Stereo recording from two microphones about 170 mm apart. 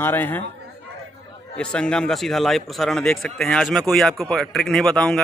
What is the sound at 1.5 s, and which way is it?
A man's voice, 5° left (ahead or behind).